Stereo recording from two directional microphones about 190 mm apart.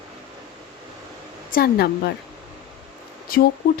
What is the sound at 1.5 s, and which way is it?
Speech, 55° left (ahead or behind).